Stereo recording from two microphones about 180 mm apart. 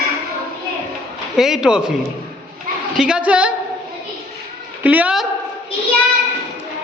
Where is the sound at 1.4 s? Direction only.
Centre (ahead or behind).